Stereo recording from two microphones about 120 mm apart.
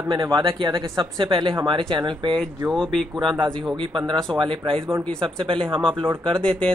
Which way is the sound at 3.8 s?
45° right (ahead or behind).